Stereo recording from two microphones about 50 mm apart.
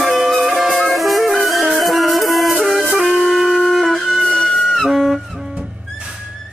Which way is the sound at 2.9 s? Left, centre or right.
Centre.